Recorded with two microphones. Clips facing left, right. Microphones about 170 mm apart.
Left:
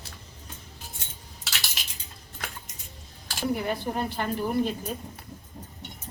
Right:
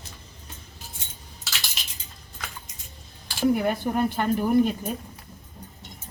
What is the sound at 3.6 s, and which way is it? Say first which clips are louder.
Speech: right 5 dB; 50° right (ahead or behind).